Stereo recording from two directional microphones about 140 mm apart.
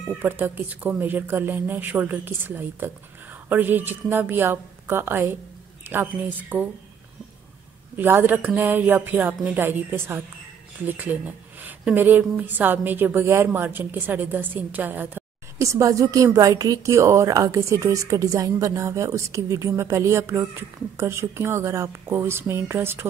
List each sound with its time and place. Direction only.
0.2 s a woman's voice: 15° right (ahead or behind)
7.9 s a woman's voice: 15° right (ahead or behind)